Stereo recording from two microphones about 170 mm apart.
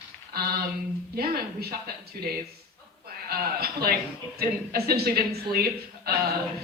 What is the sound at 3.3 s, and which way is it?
A woman's voice, 65° right (ahead or behind).